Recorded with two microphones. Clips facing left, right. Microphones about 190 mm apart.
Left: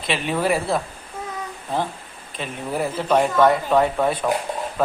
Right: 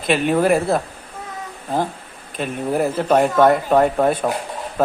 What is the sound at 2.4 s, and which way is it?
Speech, 45° right (ahead or behind).